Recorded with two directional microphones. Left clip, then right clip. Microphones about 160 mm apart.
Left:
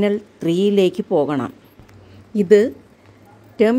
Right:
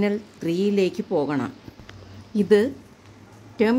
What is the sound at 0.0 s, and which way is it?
A woman's voice, 40° left (ahead or behind).